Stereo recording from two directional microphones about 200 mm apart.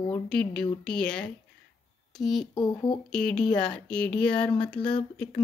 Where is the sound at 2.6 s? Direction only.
20° left (ahead or behind).